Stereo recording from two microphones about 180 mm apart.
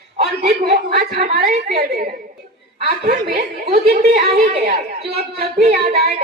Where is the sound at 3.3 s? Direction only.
60° right (ahead or behind).